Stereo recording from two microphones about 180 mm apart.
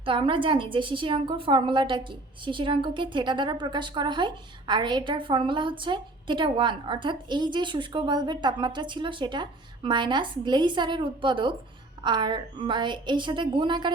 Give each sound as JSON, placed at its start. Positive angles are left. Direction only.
{"t": 0.0, "sound": "a woman's voice", "side_deg": -30}